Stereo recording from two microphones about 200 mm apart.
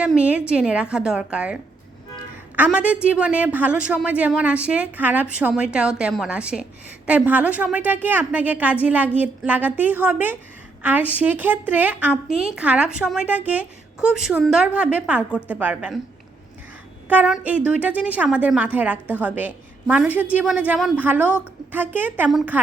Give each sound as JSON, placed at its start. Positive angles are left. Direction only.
{"t": 0.0, "sound": "a woman's voice", "side_deg": -5}
{"t": 2.7, "sound": "a woman's voice", "side_deg": -5}
{"t": 17.1, "sound": "a woman's voice", "side_deg": -5}